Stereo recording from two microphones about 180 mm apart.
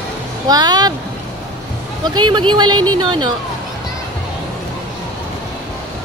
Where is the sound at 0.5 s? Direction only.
20° right (ahead or behind).